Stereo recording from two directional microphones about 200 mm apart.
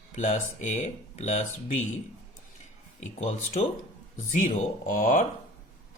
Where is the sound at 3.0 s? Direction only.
35° left (ahead or behind).